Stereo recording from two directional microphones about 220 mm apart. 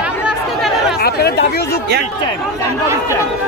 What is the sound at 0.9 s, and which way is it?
Chatter, 45° left (ahead or behind).